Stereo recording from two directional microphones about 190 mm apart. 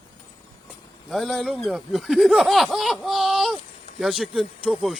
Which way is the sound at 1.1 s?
Centre (ahead or behind).